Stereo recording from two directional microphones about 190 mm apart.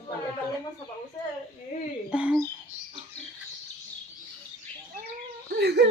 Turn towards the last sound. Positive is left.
turn(degrees=-60)  # may be behind; listen again after turning